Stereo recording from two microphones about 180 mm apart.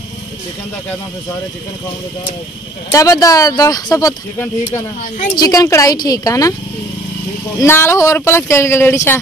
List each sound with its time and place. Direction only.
2.9 s speech: 20° left (ahead or behind)
7.6 s speech: 15° left (ahead or behind)